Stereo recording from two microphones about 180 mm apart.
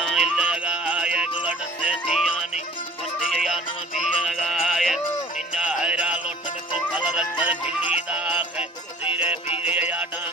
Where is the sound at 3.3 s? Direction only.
Centre (ahead or behind).